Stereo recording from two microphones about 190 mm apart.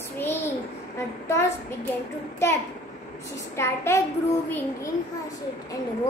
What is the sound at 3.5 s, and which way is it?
A woman's voice, 15° left (ahead or behind).